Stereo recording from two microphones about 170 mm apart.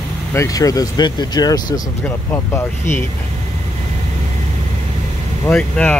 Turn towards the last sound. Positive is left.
turn(degrees=5)  # may be behind; listen again after turning